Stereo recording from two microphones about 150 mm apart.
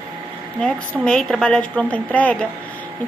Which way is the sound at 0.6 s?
5° left (ahead or behind).